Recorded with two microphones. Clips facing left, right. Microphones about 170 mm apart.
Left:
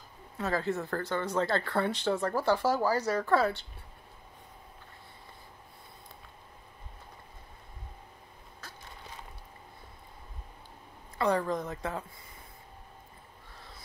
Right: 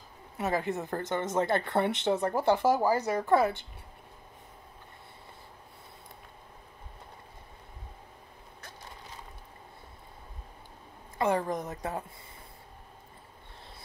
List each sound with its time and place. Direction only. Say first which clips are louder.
0.4 s speech: right 1 dB; 20° right (ahead or behind)
11.1 s speech: even; 20° right (ahead or behind)